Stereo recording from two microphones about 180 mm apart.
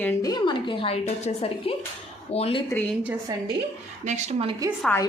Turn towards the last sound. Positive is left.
turn(degrees=10)  # may be behind; listen again after turning